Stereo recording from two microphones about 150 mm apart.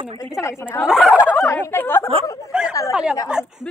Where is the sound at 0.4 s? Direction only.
20° left (ahead or behind).